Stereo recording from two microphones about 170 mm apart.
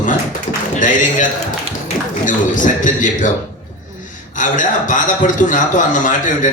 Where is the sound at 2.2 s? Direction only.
50° left (ahead or behind).